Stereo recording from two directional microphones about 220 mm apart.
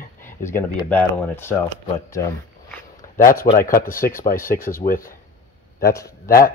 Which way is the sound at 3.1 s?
40° left (ahead or behind).